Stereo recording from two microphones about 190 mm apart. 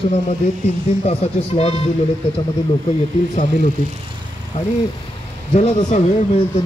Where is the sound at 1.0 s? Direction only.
30° left (ahead or behind).